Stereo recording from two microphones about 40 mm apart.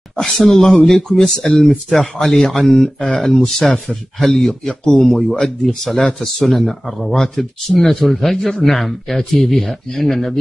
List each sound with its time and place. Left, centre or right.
0.2 s speech: centre
4.8 s speech: centre
6.2 s speech: centre